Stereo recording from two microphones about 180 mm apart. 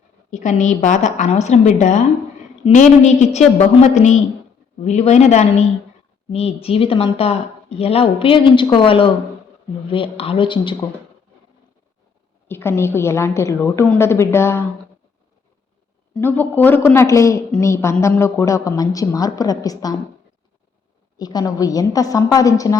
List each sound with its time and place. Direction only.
0.3 s a woman's voice: 40° left (ahead or behind)
12.5 s a woman's voice: 15° left (ahead or behind)
16.1 s a woman's voice: 10° left (ahead or behind)
21.2 s a woman's voice: 20° left (ahead or behind)